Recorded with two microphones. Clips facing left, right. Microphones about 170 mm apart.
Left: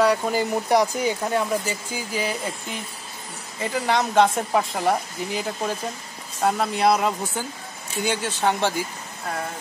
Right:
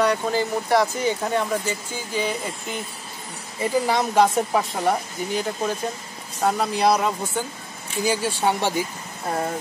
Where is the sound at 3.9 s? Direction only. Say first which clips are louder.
Left 2 dB; 5° right (ahead or behind).